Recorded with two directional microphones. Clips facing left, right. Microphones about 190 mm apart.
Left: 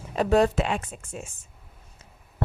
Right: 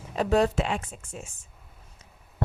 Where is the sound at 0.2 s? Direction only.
55° left (ahead or behind).